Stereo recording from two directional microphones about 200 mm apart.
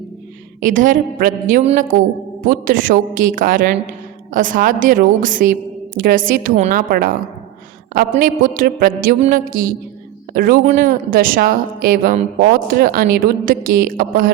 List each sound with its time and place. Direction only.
0.6 s a woman's voice: 40° right (ahead or behind)
8.1 s a woman's voice: 45° right (ahead or behind)